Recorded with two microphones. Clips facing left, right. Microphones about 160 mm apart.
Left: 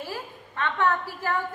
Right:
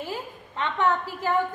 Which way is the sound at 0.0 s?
20° right (ahead or behind).